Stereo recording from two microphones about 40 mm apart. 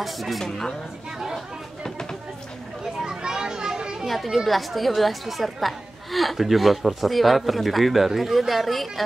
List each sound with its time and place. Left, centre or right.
0.0 s a woman's voice: centre
3.2 s children playing: centre
4.1 s a woman's voice: centre